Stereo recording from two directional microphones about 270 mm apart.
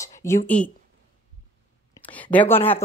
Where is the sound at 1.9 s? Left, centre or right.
Centre.